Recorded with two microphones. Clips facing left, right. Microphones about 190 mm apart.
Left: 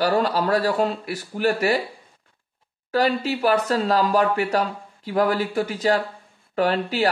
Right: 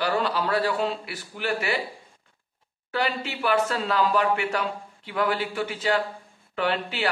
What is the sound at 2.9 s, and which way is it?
Speech, 40° left (ahead or behind).